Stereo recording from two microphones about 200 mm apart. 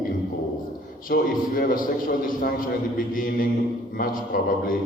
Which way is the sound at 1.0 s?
45° left (ahead or behind).